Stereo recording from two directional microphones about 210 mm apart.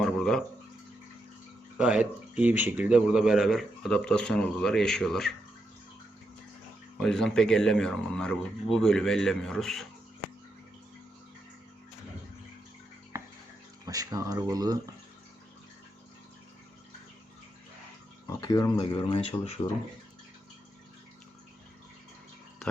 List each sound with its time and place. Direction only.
0.0 s a sound: centre (ahead or behind)
1.8 s speech: 5° right (ahead or behind)
7.0 s speech: centre (ahead or behind)
13.1 s a sound: 10° right (ahead or behind)
13.8 s speech: 15° right (ahead or behind)
18.3 s speech: 20° left (ahead or behind)